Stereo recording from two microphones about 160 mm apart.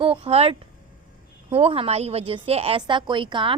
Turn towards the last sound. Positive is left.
turn(degrees=-30)  # may be behind; listen again after turning